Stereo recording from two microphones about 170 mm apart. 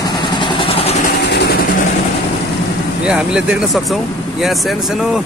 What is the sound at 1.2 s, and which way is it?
Vehicle, 80° left.